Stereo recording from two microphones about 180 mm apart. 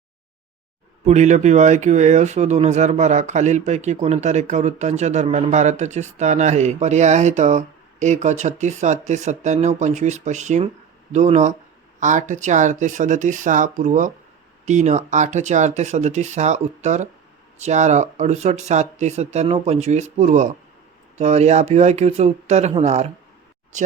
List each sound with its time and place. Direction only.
1.0 s speech: 40° right (ahead or behind)